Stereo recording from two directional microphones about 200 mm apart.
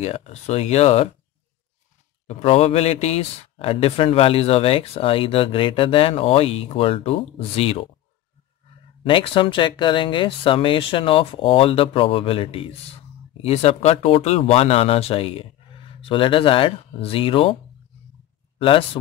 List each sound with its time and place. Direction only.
0.0 s speech: 30° left (ahead or behind)
2.2 s speech: 30° left (ahead or behind)
9.0 s speech: 25° left (ahead or behind)
18.6 s speech: 25° left (ahead or behind)